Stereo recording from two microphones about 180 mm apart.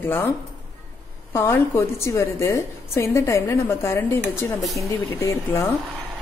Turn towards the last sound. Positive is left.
turn(degrees=15)  # may be behind; listen again after turning